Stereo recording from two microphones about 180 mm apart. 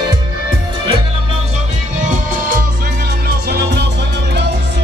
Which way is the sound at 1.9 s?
45° right (ahead or behind).